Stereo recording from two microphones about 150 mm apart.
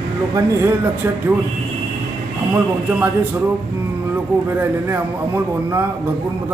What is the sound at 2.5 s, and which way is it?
Speech, 15° right (ahead or behind).